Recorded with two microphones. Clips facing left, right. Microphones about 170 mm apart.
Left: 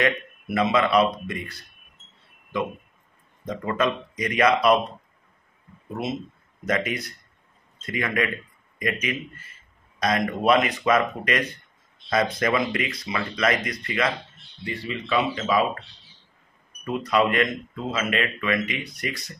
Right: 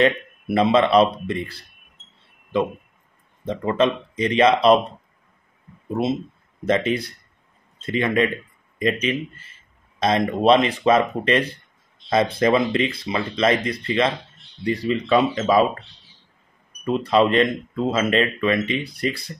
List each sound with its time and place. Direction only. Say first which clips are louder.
0.0 s speech: right 5 dB; 30° right (ahead or behind)
3.4 s speech: right 5 dB; 25° right (ahead or behind)
6.0 s speech: right 6 dB; 30° right (ahead or behind)
14.6 s speech: right 9 dB; 40° right (ahead or behind)
16.8 s speech: right 4 dB; 30° right (ahead or behind)